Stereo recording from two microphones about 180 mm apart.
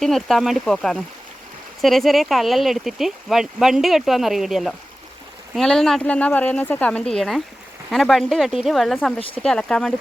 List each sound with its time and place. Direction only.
0.0 s speech: centre (ahead or behind)